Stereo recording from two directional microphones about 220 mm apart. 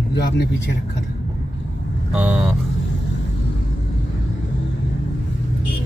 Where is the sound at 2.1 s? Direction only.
5° right (ahead or behind).